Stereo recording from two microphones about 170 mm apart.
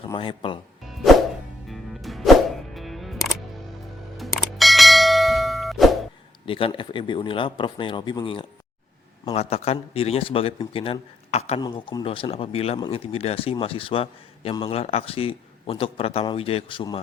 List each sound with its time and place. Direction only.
0.0 s speech: 30° left (ahead or behind)
1.6 s music: centre (ahead or behind)
4.2 s bell: centre (ahead or behind)
6.4 s speech: 30° left (ahead or behind)
11.6 s speech: 25° left (ahead or behind)